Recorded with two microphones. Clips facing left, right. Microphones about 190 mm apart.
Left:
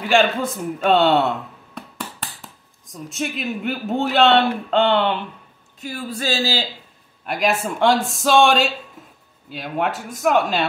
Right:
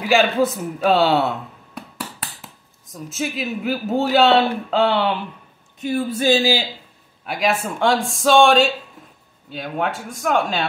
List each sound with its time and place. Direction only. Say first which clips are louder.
0.1 s speech: right 1 dB; 5° right (ahead or behind)
5.8 s a man's voice: right 7 dB; 20° right (ahead or behind)
7.2 s speech: even; centre (ahead or behind)